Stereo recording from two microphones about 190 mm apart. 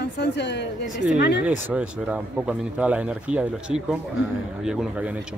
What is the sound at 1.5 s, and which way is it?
Speech, 5° right (ahead or behind).